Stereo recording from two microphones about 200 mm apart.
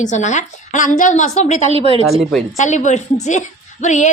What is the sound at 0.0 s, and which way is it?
A woman's voice, 35° left (ahead or behind).